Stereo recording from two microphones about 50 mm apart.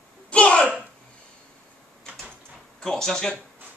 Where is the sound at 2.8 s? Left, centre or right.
Centre.